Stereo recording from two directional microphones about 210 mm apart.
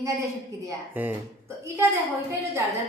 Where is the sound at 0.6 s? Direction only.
10° right (ahead or behind).